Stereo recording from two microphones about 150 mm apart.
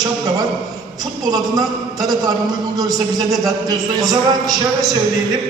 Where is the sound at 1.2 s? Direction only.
25° right (ahead or behind).